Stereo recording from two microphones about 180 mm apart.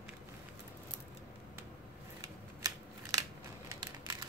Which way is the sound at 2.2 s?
20° right (ahead or behind).